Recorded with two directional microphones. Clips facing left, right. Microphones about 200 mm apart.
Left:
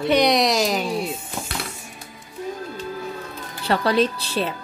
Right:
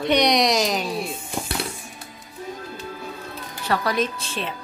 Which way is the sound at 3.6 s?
30° left (ahead or behind).